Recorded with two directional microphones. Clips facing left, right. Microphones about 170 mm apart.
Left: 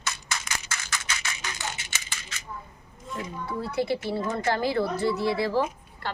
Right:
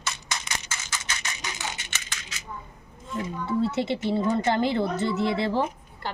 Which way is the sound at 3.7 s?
25° right (ahead or behind).